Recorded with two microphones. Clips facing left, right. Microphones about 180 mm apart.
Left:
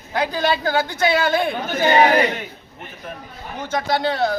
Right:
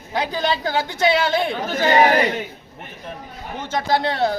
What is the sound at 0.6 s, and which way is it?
Speech, 20° right (ahead or behind).